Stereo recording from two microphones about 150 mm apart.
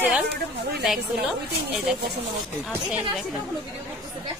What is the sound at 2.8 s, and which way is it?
Speech, 5° right (ahead or behind).